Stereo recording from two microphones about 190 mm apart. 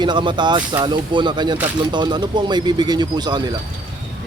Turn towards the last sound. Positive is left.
turn(degrees=-20)  # may be behind; listen again after turning